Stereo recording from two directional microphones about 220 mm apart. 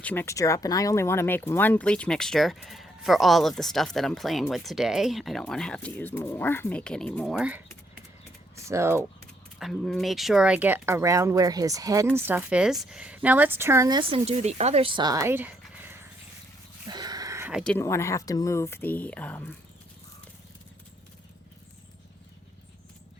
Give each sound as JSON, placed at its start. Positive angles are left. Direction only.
{"t": 0.0, "sound": "speech", "side_deg": 10}
{"t": 9.6, "sound": "speech", "side_deg": 0}
{"t": 16.8, "sound": "a sound", "side_deg": -20}
{"t": 17.6, "sound": "speech", "side_deg": 5}